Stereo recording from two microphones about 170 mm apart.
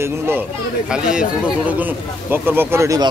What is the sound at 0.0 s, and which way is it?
Speech, 10° right (ahead or behind).